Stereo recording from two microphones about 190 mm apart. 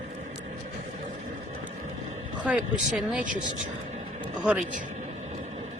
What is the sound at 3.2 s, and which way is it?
Speech, 45° right (ahead or behind).